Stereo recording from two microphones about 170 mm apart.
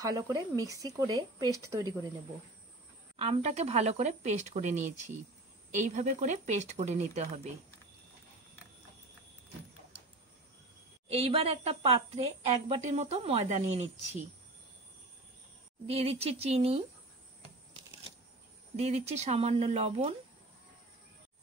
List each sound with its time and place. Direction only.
0.0 s speech: 20° right (ahead or behind)
3.2 s speech: 35° right (ahead or behind)
11.1 s speech: 35° right (ahead or behind)
15.9 s speech: 35° right (ahead or behind)
18.8 s speech: 40° right (ahead or behind)